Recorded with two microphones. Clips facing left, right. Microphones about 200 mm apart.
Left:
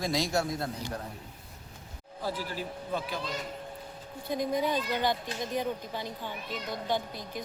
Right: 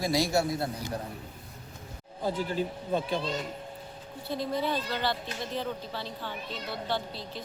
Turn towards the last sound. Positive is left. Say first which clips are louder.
# left 1 dB
turn(degrees=15)  # may be behind; listen again after turning